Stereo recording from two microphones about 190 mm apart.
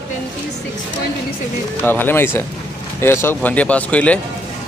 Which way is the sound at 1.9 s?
10° left (ahead or behind).